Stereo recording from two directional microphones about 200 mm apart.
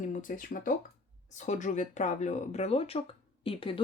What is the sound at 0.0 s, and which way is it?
Speech, 40° left (ahead or behind).